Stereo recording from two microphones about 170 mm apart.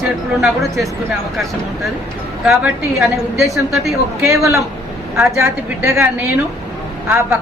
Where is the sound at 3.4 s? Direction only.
Centre (ahead or behind).